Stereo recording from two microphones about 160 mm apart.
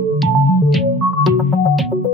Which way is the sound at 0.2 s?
Centre (ahead or behind).